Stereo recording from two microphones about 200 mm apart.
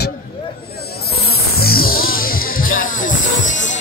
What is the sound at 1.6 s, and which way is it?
Music, 50° left (ahead or behind).